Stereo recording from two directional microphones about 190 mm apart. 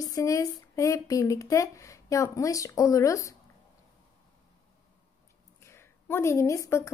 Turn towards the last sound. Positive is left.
turn(degrees=15)  # may be behind; listen again after turning